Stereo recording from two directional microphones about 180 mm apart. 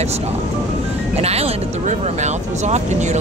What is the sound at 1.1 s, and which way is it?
Speech, 35° right (ahead or behind).